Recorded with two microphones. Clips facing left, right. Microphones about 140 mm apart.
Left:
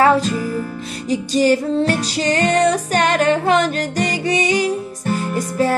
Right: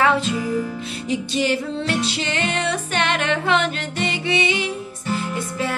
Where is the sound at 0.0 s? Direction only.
40° left (ahead or behind).